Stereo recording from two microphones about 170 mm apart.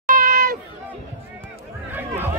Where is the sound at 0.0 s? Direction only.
55° right (ahead or behind).